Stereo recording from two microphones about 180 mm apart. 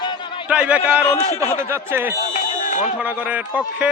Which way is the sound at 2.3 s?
45° left (ahead or behind).